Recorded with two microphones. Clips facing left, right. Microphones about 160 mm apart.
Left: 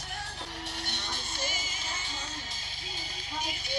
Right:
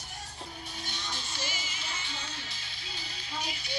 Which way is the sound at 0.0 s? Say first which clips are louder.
Left 3 dB; 75° left (ahead or behind).